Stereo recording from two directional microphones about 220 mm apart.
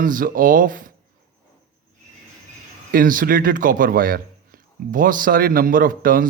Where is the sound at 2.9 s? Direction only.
40° right (ahead or behind).